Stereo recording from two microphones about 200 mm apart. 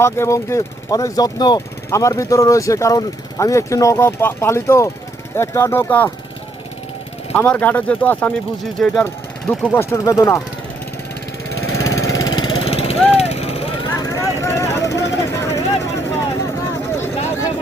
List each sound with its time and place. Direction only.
0.0 s speech: 15° left (ahead or behind)
7.3 s speech: 10° left (ahead or behind)
11.8 s lawn mower: 15° left (ahead or behind)
13.1 s vehicle: 30° left (ahead or behind); by 16.5 s 15° left (ahead or behind)